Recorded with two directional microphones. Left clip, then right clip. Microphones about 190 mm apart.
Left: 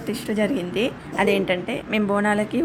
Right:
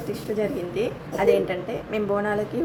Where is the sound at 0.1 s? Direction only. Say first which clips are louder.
Left 3 dB; 25° left (ahead or behind).